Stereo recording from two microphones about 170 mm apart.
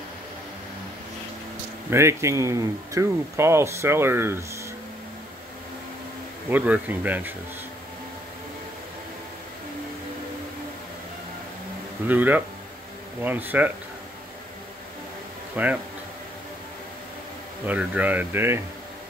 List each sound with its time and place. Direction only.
1.9 s speech: 15° right (ahead or behind)
6.5 s speech: 10° right (ahead or behind)
12.1 s speech: 10° right (ahead or behind)
15.5 s speech: 10° right (ahead or behind)
17.6 s speech: 10° right (ahead or behind)